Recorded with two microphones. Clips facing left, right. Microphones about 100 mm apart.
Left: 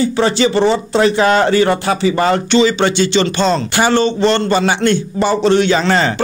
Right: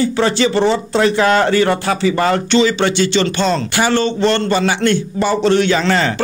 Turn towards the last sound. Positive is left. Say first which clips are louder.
# left 1 dB
turn(degrees=25)  # may be behind; listen again after turning